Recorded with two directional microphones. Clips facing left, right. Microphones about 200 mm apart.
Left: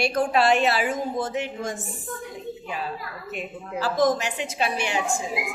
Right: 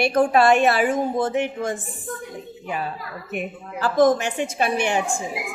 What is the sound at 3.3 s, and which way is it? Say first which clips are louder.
A woman's voice: right 2 dB; 55° right (ahead or behind).